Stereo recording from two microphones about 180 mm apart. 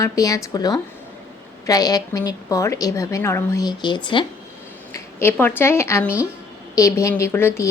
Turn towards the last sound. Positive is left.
turn(degrees=15)  # may be behind; listen again after turning